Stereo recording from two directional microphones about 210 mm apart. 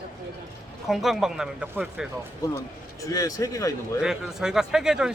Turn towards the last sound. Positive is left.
turn(degrees=-5)  # may be behind; listen again after turning